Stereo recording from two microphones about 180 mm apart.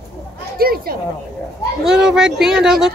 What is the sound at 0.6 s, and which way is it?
Speech, 55° right (ahead or behind).